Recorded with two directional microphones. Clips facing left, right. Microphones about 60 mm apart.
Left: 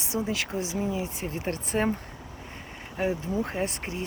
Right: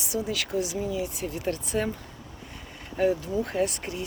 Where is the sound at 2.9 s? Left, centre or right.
Left.